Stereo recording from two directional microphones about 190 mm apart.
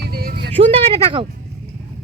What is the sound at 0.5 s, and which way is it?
Speech, 30° right (ahead or behind).